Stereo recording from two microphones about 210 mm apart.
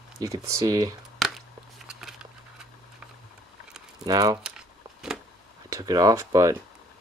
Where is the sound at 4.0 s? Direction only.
20° right (ahead or behind).